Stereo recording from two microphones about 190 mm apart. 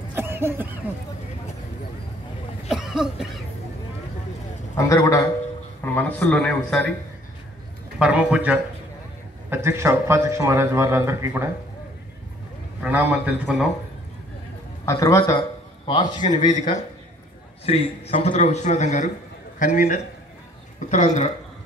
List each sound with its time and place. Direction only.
0.1 s cough: 10° right (ahead or behind)
2.7 s cough: centre (ahead or behind)
4.7 s a man's voice: 15° left (ahead or behind)
8.0 s a man's voice: 5° right (ahead or behind)
12.8 s a man's voice: 10° right (ahead or behind)
14.9 s a man's voice: 15° left (ahead or behind)
16.2 s a man's voice: 40° left (ahead or behind)
17.6 s a man's voice: 30° left (ahead or behind)
18.3 s a man's voice: 40° left (ahead or behind)